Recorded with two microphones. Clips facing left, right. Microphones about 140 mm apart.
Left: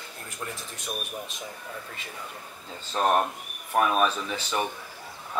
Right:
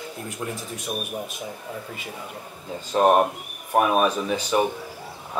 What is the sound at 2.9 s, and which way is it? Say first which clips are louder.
Speech: right 6 dB; 20° right (ahead or behind).